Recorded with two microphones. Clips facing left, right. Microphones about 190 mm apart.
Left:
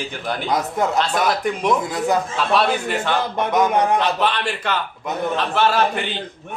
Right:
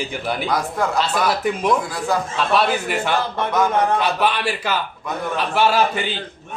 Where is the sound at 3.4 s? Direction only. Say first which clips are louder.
Left 2 dB; 20° left (ahead or behind).